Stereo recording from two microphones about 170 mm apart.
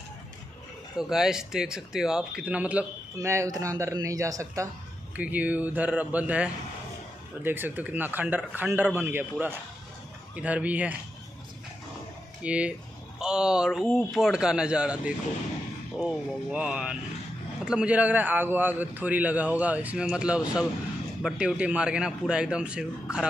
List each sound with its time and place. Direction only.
1.1 s a man's voice: 5° right (ahead or behind)
12.4 s a man's voice: 5° right (ahead or behind)